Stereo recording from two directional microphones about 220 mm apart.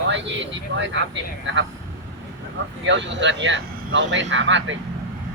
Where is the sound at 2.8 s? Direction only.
55° right (ahead or behind).